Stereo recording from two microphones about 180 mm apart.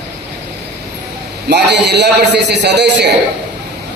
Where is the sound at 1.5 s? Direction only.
70° right (ahead or behind).